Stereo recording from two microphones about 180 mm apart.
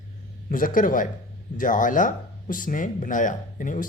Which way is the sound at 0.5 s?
50° left (ahead or behind).